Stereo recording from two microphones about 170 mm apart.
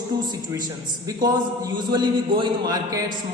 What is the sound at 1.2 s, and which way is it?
A man's voice, 25° right (ahead or behind).